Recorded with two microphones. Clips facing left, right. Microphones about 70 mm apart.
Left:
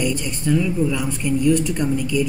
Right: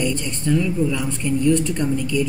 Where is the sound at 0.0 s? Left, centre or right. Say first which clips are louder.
Even; centre.